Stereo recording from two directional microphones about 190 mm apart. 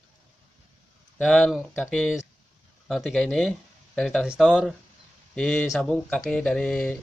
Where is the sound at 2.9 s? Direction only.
Centre (ahead or behind).